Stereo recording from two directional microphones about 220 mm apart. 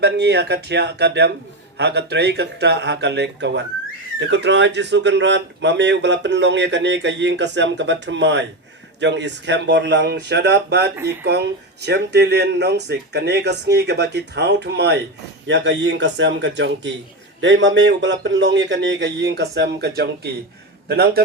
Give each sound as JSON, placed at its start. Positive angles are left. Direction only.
{"t": 0.0, "sound": "speech", "side_deg": -50}
{"t": 10.9, "sound": "speech", "side_deg": -10}
{"t": 11.2, "sound": "a man's voice", "side_deg": -50}